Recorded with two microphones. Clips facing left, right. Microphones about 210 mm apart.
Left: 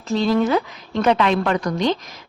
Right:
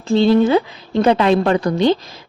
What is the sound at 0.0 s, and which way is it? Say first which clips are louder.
A woman's voice: right 6 dB; 30° right (ahead or behind).